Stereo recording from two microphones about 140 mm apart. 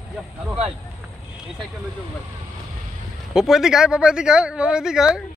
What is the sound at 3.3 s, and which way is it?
Speech, 5° right (ahead or behind).